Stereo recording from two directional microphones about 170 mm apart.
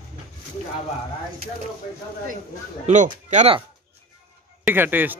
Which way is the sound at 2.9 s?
45° right (ahead or behind).